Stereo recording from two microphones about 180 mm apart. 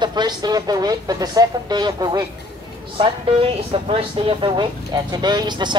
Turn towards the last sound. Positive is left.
turn(degrees=-25)  # may be behind; listen again after turning